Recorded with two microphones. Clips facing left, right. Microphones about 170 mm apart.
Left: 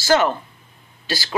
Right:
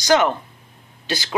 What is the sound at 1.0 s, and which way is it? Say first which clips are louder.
Speech: right 1 dB; 20° right (ahead or behind).